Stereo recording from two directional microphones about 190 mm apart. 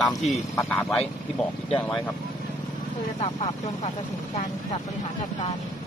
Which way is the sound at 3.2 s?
35° left (ahead or behind).